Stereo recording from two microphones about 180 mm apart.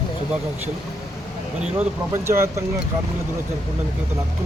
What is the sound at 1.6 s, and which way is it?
Speech, 10° right (ahead or behind).